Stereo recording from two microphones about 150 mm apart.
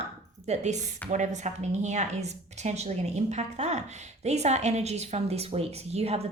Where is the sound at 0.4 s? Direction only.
50° right (ahead or behind).